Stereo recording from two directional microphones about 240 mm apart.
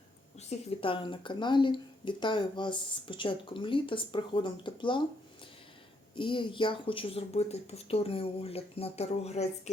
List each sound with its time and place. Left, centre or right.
0.3 s speech: left
6.1 s speech: centre